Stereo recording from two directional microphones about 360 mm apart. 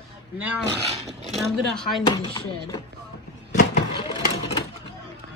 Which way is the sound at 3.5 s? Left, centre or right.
Left.